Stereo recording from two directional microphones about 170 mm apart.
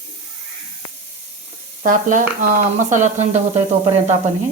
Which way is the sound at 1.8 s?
50° right (ahead or behind).